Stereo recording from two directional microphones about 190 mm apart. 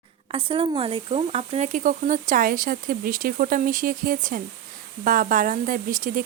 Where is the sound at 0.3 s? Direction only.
30° right (ahead or behind).